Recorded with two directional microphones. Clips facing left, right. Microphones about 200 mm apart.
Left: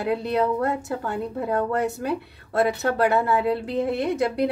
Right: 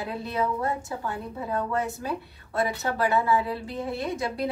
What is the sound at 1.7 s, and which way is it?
Speech, 65° left (ahead or behind).